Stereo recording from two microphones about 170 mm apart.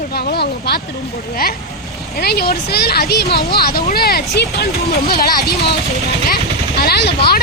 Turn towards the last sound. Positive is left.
turn(degrees=70)  # may be behind; listen again after turning